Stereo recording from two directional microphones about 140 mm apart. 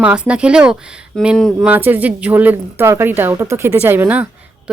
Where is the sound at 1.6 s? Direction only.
15° right (ahead or behind).